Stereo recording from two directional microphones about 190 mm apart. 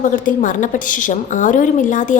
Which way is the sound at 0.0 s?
45° left (ahead or behind).